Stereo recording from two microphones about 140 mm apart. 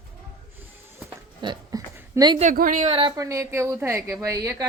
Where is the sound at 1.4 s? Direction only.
35° right (ahead or behind).